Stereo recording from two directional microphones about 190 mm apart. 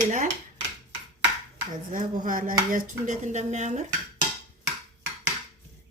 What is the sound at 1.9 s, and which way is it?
Chopping, 45° right (ahead or behind).